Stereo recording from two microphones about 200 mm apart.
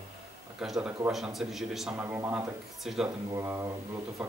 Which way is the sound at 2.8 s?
Centre (ahead or behind).